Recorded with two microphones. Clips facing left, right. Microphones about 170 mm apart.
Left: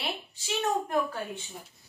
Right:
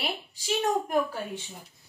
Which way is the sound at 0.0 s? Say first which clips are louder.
Right 2 dB; 10° right (ahead or behind).